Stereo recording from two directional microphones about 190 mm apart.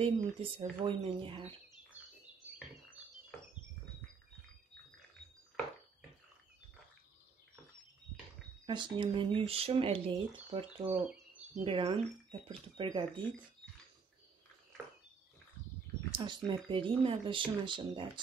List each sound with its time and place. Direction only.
0.0 s speech: 25° right (ahead or behind)
8.6 s speech: 25° right (ahead or behind)
16.1 s speech: 25° right (ahead or behind)